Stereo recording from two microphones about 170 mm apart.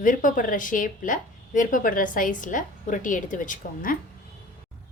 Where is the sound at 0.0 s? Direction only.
50° left (ahead or behind).